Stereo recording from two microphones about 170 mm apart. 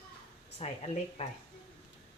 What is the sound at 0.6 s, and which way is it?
Speech, 40° left (ahead or behind).